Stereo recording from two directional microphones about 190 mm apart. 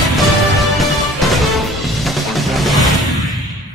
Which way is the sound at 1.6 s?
Centre (ahead or behind).